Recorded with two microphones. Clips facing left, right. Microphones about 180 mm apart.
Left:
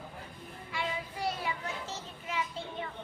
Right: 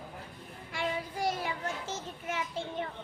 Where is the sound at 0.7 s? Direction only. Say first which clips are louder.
Right 3 dB; 45° right (ahead or behind).